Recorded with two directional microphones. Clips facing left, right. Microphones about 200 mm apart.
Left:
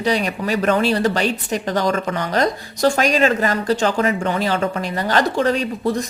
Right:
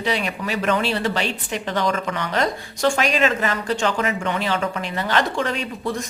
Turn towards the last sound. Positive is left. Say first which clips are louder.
# left 5 dB
turn(degrees=40)  # may be behind; listen again after turning